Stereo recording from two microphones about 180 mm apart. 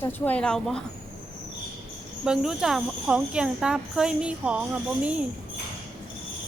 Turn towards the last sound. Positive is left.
turn(degrees=-5)  # may be behind; listen again after turning